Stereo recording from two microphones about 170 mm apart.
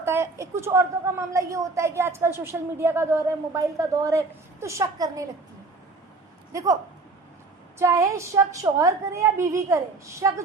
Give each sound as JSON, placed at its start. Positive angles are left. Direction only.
{"t": 0.0, "sound": "a woman's voice", "side_deg": -15}
{"t": 6.5, "sound": "speech", "side_deg": -20}
{"t": 7.8, "sound": "a woman's voice", "side_deg": -20}